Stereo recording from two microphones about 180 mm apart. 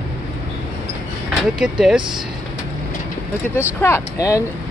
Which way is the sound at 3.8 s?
15° left (ahead or behind).